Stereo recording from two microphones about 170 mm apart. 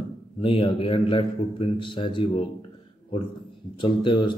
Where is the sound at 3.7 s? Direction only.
30° left (ahead or behind).